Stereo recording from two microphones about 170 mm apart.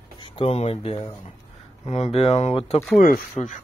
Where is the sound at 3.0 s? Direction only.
50° left (ahead or behind).